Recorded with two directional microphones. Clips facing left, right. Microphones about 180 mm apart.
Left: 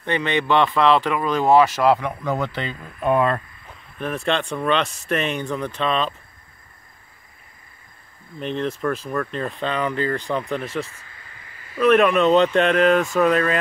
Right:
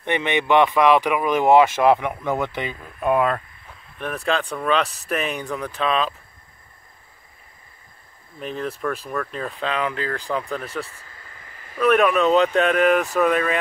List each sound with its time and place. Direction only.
0.0 s speech: 20° right (ahead or behind)
8.4 s speech: 5° right (ahead or behind)
10.9 s a sound: 40° right (ahead or behind)
11.8 s speech: centre (ahead or behind)